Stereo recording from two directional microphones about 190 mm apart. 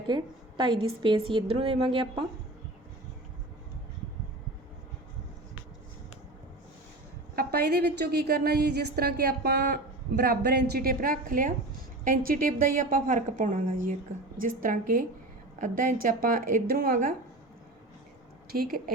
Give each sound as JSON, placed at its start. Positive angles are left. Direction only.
{"t": 0.1, "sound": "a woman's voice", "side_deg": -25}
{"t": 7.3, "sound": "a woman's voice", "side_deg": -55}
{"t": 18.5, "sound": "a woman's voice", "side_deg": -50}